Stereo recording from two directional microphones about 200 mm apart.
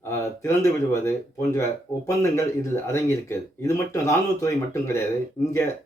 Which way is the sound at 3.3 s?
15° left (ahead or behind).